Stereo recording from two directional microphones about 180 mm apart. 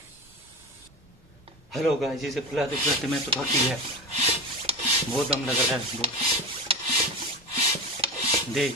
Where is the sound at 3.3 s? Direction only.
30° right (ahead or behind).